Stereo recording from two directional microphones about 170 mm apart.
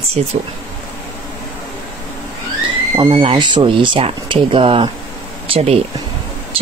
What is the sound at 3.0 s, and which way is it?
Speech, 30° right (ahead or behind).